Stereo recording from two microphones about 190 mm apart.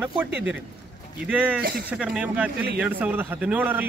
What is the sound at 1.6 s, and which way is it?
Speech, 55° right (ahead or behind).